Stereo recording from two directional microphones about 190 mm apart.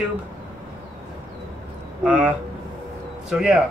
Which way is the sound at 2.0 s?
5° right (ahead or behind).